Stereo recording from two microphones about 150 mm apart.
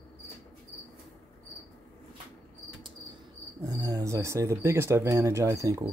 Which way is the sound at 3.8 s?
20° right (ahead or behind).